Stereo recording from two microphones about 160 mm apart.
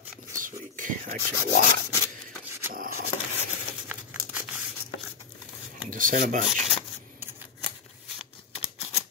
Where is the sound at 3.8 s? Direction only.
5° right (ahead or behind).